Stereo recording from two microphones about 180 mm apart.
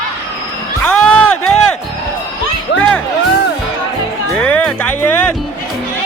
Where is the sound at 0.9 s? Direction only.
5° left (ahead or behind).